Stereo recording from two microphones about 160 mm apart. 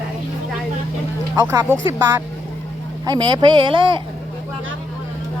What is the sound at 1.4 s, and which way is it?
Speech, 20° right (ahead or behind).